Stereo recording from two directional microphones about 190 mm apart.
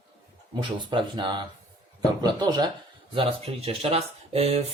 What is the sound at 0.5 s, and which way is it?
A man's voice, 25° right (ahead or behind).